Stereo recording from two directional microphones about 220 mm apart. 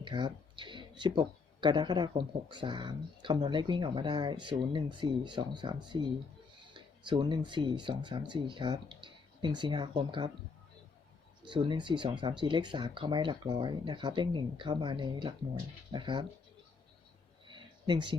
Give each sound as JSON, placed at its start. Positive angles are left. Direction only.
{"t": 0.0, "sound": "speech", "side_deg": -20}
{"t": 11.4, "sound": "speech", "side_deg": -20}
{"t": 17.5, "sound": "a sound", "side_deg": -20}